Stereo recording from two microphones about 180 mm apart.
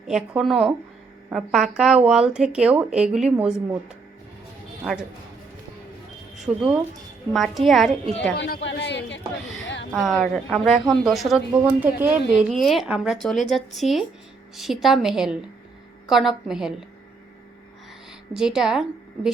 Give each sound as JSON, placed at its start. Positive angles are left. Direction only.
{"t": 0.1, "sound": "speech", "side_deg": 0}
{"t": 6.4, "sound": "speech", "side_deg": 0}
{"t": 8.4, "sound": "a man's voice", "side_deg": 70}
{"t": 9.9, "sound": "speech", "side_deg": 0}
{"t": 18.3, "sound": "speech", "side_deg": -5}